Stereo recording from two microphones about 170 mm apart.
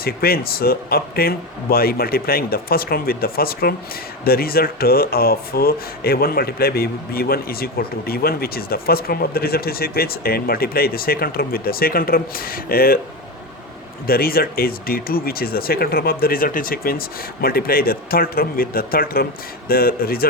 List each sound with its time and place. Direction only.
0.0 s speech: 65° left (ahead or behind)
14.1 s speech: 60° left (ahead or behind)